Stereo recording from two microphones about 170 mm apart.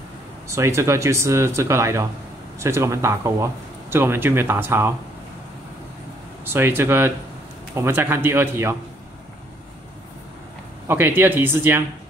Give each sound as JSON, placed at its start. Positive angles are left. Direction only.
{"t": 0.5, "sound": "speech", "side_deg": -15}
{"t": 6.4, "sound": "speech", "side_deg": -15}
{"t": 10.9, "sound": "speech", "side_deg": -15}